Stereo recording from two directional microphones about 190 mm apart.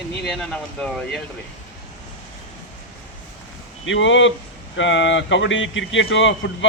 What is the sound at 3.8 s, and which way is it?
A man's voice, 80° left.